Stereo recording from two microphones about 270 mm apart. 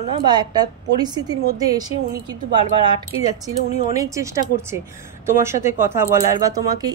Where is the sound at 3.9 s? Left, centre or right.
Centre.